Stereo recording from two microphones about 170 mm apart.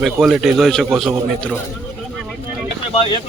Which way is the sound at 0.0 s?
5° right (ahead or behind).